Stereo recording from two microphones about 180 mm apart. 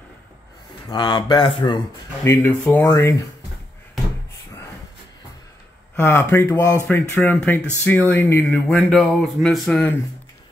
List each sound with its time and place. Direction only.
0.8 s speech: 25° left (ahead or behind)
2.2 s speech: 10° left (ahead or behind)
5.9 s speech: 10° left (ahead or behind)